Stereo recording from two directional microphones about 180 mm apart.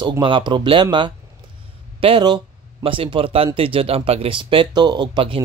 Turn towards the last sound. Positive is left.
turn(degrees=-30)  # may be behind; listen again after turning